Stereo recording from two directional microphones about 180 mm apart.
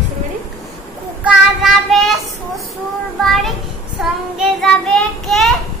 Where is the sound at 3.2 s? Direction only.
Centre (ahead or behind).